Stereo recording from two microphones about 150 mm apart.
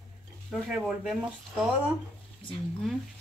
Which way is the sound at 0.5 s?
Centre (ahead or behind).